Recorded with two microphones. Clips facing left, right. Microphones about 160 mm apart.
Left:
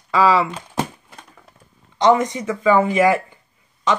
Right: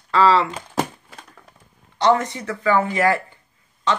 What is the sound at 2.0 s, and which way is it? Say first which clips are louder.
Speech: left 3 dB; 20° left (ahead or behind).